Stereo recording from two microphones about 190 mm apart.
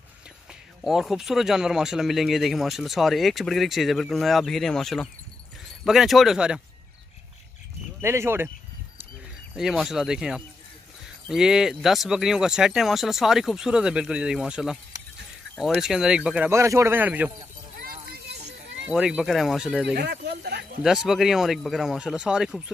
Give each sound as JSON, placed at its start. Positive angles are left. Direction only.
{"t": 0.8, "sound": "speech", "side_deg": 0}
{"t": 8.0, "sound": "speech", "side_deg": -15}
{"t": 9.6, "sound": "speech", "side_deg": -5}
{"t": 17.7, "sound": "clip-clop", "side_deg": -50}
{"t": 18.9, "sound": "speech", "side_deg": -5}
{"t": 19.9, "sound": "speech", "side_deg": -60}
{"t": 20.8, "sound": "speech", "side_deg": 0}